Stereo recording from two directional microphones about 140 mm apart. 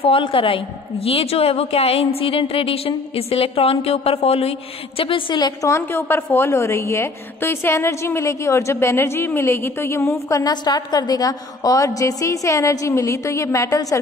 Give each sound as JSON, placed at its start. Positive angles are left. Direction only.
{"t": 0.0, "sound": "a woman's voice", "side_deg": 40}